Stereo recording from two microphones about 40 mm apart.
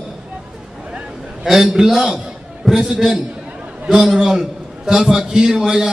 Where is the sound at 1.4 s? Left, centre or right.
Centre.